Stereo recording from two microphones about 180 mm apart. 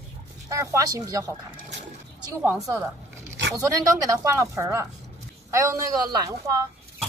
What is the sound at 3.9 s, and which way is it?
A man's voice, 15° right (ahead or behind).